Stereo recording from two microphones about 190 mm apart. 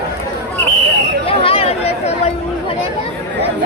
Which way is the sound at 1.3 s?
30° left (ahead or behind).